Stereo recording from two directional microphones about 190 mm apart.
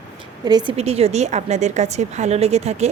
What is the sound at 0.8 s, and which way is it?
Speech, 35° right (ahead or behind).